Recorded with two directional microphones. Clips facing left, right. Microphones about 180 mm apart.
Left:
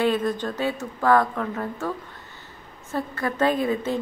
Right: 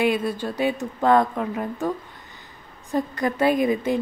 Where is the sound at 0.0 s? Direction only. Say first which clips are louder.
Even; 10° right (ahead or behind).